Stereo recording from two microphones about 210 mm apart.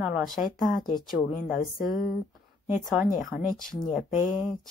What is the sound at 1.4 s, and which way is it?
Speech, 40° left (ahead or behind).